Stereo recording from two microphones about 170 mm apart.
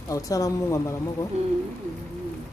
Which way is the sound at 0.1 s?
20° left (ahead or behind).